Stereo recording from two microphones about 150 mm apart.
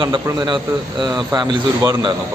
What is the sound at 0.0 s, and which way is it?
A man's voice, 30° right (ahead or behind).